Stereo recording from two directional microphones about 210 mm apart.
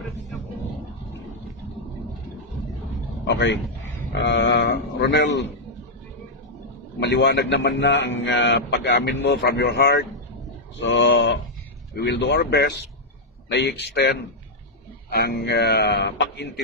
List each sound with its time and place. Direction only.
3.3 s a man's voice: 55° left (ahead or behind)
7.0 s a man's voice: 55° left (ahead or behind)